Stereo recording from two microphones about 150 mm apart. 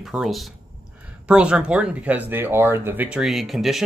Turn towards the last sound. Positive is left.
turn(degrees=0)  # may be behind; listen again after turning